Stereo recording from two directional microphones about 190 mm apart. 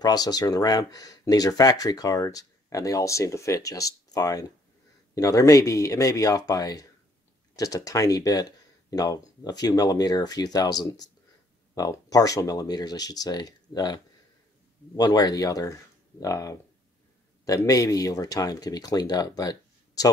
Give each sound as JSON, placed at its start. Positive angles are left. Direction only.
{"t": 0.0, "sound": "speech", "side_deg": 20}